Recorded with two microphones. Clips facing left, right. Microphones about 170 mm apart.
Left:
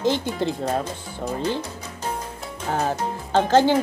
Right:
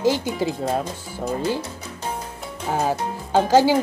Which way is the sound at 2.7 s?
10° right (ahead or behind).